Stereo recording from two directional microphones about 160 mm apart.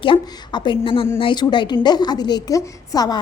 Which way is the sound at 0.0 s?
30° left (ahead or behind).